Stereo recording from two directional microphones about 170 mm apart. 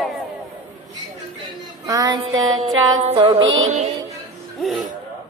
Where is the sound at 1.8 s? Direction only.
20° right (ahead or behind).